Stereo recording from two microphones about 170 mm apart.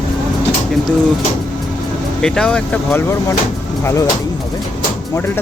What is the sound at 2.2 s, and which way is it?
Speech, 5° left (ahead or behind).